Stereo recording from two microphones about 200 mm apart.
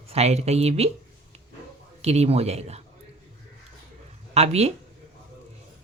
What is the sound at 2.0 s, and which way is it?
Speech, 30° right (ahead or behind).